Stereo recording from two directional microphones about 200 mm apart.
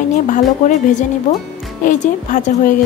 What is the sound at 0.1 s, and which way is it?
A woman's voice, 35° left (ahead or behind).